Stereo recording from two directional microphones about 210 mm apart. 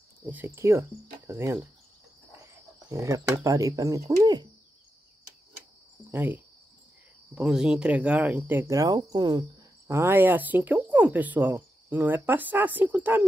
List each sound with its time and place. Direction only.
0.2 s speech: 10° right (ahead or behind)
1.2 s cricket: 10° right (ahead or behind)
2.9 s speech: 15° right (ahead or behind)
6.1 s speech: 10° right (ahead or behind)